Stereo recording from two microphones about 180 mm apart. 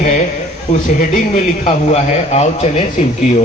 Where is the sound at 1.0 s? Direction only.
40° left (ahead or behind).